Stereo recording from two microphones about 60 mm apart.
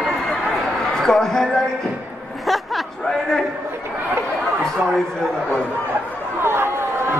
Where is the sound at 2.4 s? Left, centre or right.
Centre.